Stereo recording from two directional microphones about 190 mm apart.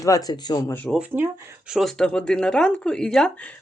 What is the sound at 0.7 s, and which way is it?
Speech, 5° left (ahead or behind).